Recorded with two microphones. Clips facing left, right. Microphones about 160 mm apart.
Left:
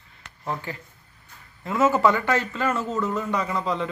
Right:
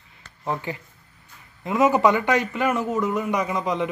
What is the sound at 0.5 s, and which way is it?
A man's voice, 20° right (ahead or behind).